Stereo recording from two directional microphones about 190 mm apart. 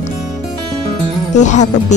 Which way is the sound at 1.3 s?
40° left (ahead or behind).